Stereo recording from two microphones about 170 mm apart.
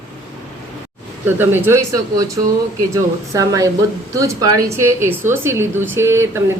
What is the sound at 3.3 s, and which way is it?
A woman's voice, 20° right (ahead or behind).